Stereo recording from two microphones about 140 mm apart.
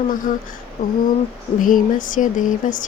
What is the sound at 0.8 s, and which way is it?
Speech, 65° left (ahead or behind).